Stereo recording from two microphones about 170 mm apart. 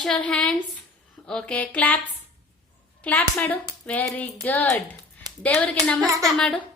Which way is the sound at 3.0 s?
10° left (ahead or behind).